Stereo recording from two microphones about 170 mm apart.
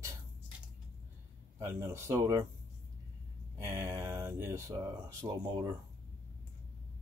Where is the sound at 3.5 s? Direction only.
15° right (ahead or behind).